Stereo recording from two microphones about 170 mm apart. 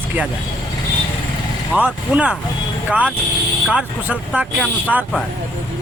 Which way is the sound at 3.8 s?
5° right (ahead or behind).